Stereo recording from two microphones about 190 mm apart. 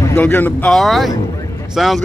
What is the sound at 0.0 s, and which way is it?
Speech, 10° left (ahead or behind).